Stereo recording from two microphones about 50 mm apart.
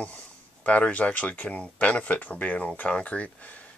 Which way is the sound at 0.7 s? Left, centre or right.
Left.